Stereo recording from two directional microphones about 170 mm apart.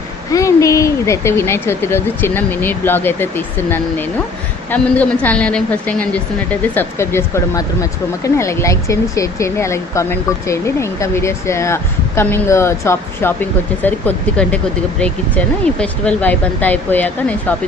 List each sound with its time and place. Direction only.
0.3 s a woman's voice: 20° left (ahead or behind)